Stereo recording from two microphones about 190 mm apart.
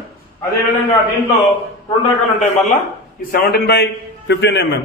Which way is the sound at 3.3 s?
50° left (ahead or behind).